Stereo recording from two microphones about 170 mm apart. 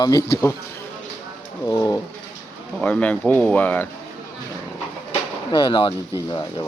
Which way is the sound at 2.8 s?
10° left (ahead or behind).